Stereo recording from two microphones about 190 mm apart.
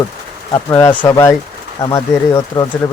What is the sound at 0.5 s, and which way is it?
Speech, 25° left (ahead or behind).